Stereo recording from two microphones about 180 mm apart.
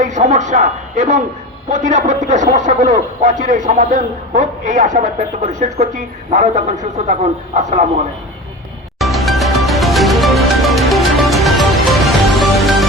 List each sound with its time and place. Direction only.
0.0 s a man's voice: 40° right (ahead or behind)
9.0 s music: centre (ahead or behind)